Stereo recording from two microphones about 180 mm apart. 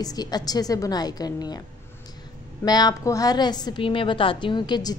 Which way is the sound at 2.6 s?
20° left (ahead or behind).